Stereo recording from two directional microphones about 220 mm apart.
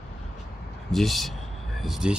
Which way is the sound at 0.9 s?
Centre (ahead or behind).